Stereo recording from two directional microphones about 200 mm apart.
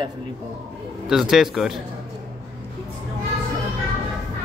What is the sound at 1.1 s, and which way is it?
Speech, centre (ahead or behind).